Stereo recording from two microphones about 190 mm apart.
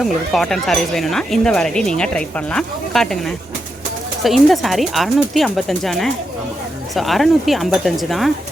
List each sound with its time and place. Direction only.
0.0 s speech: centre (ahead or behind)